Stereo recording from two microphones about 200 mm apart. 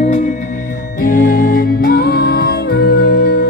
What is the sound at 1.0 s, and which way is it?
Music, 45° left (ahead or behind).